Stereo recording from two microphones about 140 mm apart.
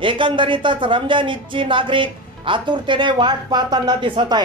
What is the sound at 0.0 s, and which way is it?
A man's voice, 35° right (ahead or behind).